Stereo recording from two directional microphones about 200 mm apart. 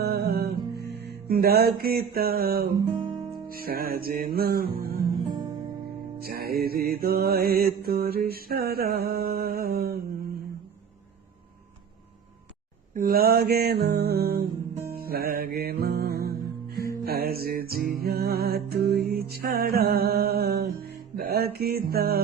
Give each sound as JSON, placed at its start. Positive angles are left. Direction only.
{"t": 0.0, "sound": "music", "side_deg": -50}
{"t": 5.3, "sound": "music", "side_deg": -20}
{"t": 6.1, "sound": "music", "side_deg": -50}
{"t": 12.9, "sound": "music", "side_deg": -45}